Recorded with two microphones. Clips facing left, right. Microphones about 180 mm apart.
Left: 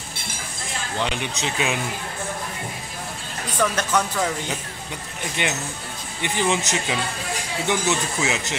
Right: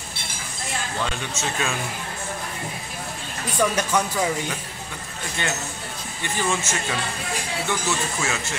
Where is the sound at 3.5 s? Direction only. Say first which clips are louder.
Even; 10° right (ahead or behind).